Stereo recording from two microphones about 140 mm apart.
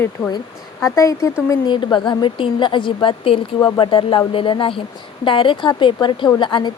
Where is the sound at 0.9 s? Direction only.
25° left (ahead or behind).